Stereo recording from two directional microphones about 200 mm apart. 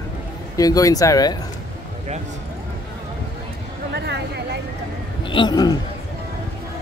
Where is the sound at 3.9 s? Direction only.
55° right (ahead or behind).